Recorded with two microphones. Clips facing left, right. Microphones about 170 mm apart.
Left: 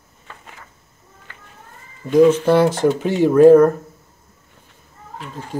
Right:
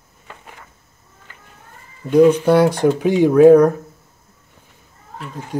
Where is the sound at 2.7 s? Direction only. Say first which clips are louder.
Right 2 dB; 15° right (ahead or behind).